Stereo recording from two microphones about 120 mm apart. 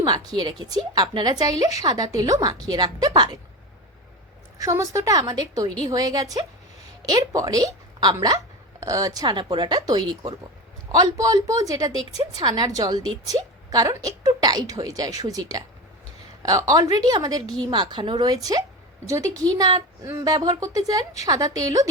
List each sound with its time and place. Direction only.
0.0 s a woman's voice: 35° right (ahead or behind)
4.5 s a woman's voice: 30° right (ahead or behind)
19.0 s a woman's voice: 25° right (ahead or behind)